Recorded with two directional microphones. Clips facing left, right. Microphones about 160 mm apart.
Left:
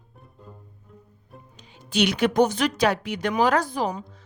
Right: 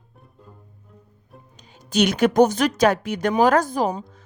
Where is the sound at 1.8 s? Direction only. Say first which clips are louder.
Right 3 dB; 45° right (ahead or behind).